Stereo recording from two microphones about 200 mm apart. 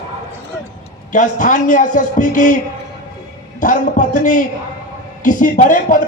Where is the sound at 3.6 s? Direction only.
40° left (ahead or behind).